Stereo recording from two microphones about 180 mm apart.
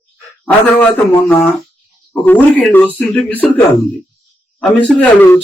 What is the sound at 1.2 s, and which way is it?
A man's voice, 10° left (ahead or behind).